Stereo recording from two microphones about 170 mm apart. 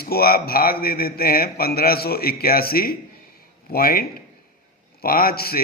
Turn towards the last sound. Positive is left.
turn(degrees=60)  # may be behind; listen again after turning